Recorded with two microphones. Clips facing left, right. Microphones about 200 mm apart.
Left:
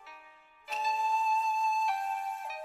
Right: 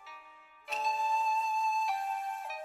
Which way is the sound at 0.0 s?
Centre (ahead or behind).